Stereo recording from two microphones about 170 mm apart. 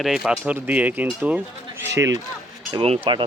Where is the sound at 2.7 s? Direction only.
35° right (ahead or behind).